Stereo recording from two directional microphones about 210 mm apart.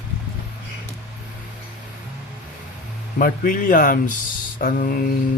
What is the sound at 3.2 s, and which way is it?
Speech, 40° left (ahead or behind).